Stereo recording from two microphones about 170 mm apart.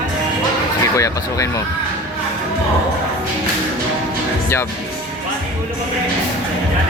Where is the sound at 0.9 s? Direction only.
20° left (ahead or behind).